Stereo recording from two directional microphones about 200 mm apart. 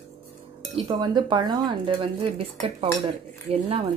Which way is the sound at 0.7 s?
25° right (ahead or behind).